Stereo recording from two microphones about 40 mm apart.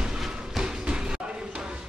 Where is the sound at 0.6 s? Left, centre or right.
Centre.